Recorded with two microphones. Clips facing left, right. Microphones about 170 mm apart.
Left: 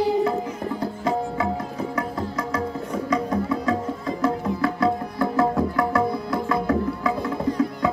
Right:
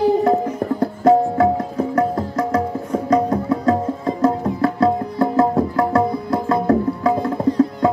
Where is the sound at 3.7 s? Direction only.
35° right (ahead or behind).